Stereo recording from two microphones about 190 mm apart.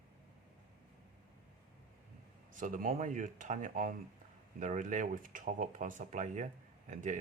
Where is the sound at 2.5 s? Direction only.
45° right (ahead or behind).